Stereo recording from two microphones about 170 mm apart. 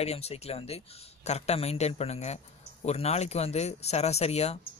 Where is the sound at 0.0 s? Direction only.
40° left (ahead or behind).